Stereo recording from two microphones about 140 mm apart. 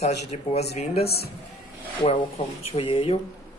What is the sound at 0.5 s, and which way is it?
Speech, 50° left (ahead or behind).